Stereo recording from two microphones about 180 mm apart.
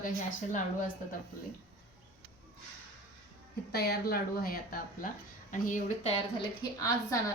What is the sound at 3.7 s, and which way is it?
Speech, 60° left (ahead or behind).